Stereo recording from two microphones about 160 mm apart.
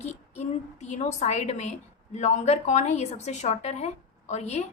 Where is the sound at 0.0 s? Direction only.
45° left (ahead or behind).